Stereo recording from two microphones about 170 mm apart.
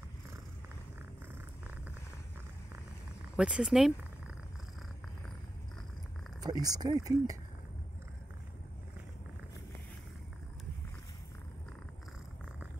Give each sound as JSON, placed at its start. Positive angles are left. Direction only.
{"t": 3.3, "sound": "speech", "side_deg": -5}
{"t": 6.4, "sound": "speech", "side_deg": -20}